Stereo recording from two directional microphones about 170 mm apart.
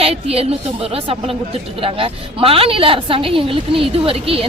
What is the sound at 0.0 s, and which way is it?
A woman's voice, 35° right (ahead or behind).